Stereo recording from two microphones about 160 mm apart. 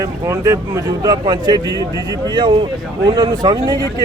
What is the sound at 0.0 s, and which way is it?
Speech, 20° right (ahead or behind).